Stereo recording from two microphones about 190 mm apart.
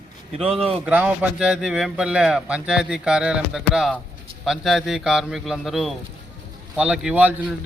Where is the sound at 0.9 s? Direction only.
10° right (ahead or behind).